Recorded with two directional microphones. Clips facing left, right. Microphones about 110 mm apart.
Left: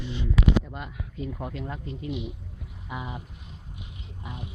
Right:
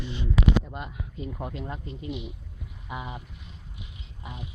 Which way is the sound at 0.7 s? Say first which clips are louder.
Right 1 dB; 25° right (ahead or behind).